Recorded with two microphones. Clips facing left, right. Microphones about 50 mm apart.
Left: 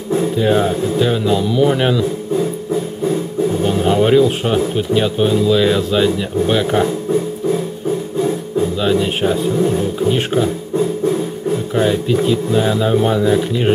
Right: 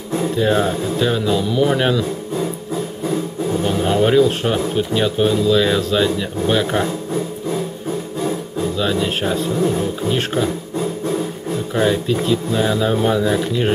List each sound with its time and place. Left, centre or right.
0.4 s speech: centre
3.6 s speech: centre
8.7 s speech: centre
11.7 s speech: centre